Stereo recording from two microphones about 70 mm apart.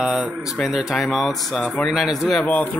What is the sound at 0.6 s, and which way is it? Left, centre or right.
Speech, centre.